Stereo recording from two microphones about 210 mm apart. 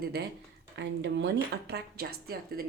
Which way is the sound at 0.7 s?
55° right (ahead or behind).